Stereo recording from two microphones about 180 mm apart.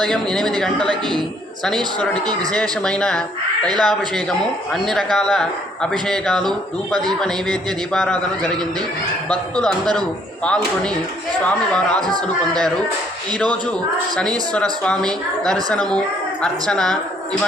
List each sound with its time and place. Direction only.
0.0 s speech: centre (ahead or behind)
9.8 s speech: 25° right (ahead or behind)
10.4 s speech: 5° left (ahead or behind)
14.2 s speech: 5° left (ahead or behind)